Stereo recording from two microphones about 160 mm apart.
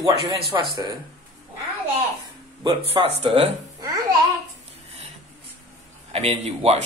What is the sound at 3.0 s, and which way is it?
Speech, 40° right (ahead or behind).